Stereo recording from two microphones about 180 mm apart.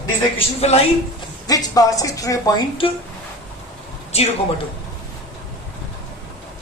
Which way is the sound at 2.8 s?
30° left (ahead or behind).